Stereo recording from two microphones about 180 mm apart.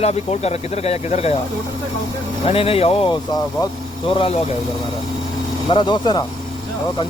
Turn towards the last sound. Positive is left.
turn(degrees=25)  # may be behind; listen again after turning